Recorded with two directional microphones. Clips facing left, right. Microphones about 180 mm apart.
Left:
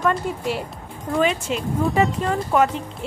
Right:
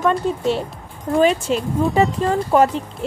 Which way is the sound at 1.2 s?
35° right (ahead or behind).